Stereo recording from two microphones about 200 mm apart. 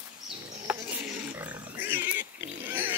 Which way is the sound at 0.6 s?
10° right (ahead or behind).